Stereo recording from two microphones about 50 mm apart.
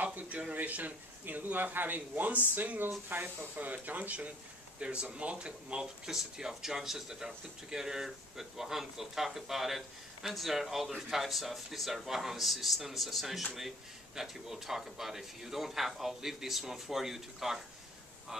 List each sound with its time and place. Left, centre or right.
0.0 s a man's voice: right; by 17.6 s centre